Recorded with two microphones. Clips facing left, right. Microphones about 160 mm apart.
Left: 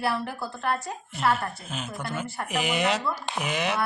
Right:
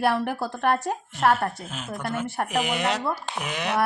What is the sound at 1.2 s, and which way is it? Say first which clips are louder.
Speech: right 4 dB; 40° right (ahead or behind).